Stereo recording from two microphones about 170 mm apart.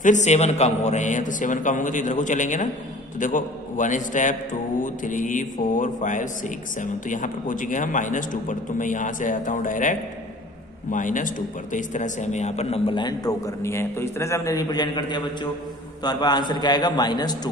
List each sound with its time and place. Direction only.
0.0 s a man's voice: 45° left (ahead or behind); by 17.4 s 25° left (ahead or behind)